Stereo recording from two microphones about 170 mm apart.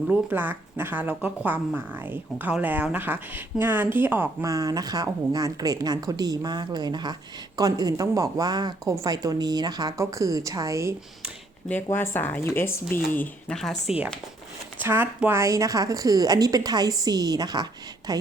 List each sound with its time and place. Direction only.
0.1 s speech: 10° right (ahead or behind)
11.7 s speech: 15° left (ahead or behind)
14.8 s speech: 10° right (ahead or behind)